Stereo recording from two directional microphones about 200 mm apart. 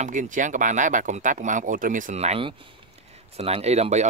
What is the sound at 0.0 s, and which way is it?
Speech, 40° right (ahead or behind).